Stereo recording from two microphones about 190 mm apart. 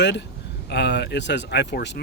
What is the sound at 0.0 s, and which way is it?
Speech, 65° left (ahead or behind).